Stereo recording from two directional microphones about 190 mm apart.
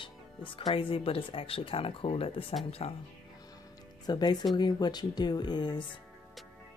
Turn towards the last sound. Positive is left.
turn(degrees=25)  # may be behind; listen again after turning